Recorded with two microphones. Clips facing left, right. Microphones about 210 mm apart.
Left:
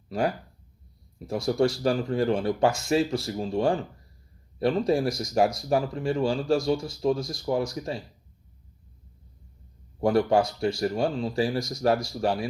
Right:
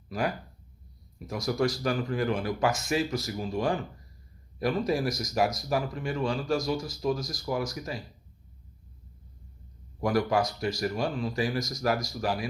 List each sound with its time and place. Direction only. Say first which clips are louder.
0.1 s speech: left 4 dB; 30° left (ahead or behind)
10.0 s speech: left 4 dB; 30° left (ahead or behind)